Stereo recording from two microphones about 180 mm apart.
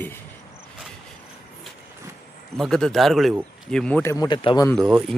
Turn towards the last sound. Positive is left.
turn(degrees=-5)  # may be behind; listen again after turning